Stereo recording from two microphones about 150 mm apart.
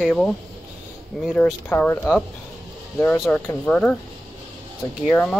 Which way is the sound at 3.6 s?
5° left (ahead or behind).